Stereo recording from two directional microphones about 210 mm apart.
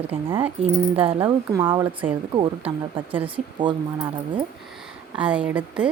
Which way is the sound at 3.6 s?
20° right (ahead or behind).